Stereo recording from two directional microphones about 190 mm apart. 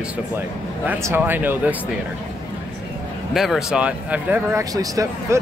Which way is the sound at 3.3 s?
Centre (ahead or behind).